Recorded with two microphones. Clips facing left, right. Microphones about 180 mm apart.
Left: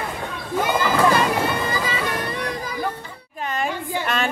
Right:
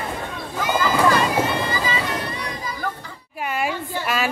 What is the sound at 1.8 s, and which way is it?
Music, 55° left (ahead or behind).